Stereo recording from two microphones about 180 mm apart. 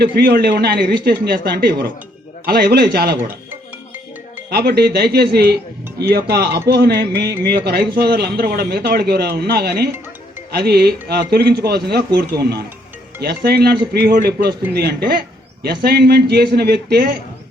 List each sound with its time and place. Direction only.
0.0 s a man's voice: 60° right (ahead or behind)
4.4 s a man's voice: 60° right (ahead or behind)